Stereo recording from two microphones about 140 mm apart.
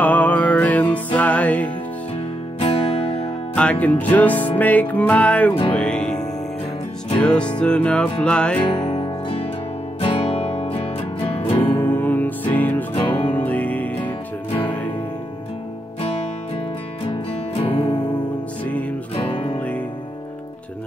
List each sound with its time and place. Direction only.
0.0 s music: 10° left (ahead or behind)
2.6 s music: 40° left (ahead or behind)
3.5 s music: 10° left (ahead or behind)
7.2 s music: 5° left (ahead or behind)
8.5 s music: 35° left (ahead or behind)
11.8 s music: 15° left (ahead or behind)
17.6 s music: 45° left (ahead or behind)
19.1 s music: 40° left (ahead or behind)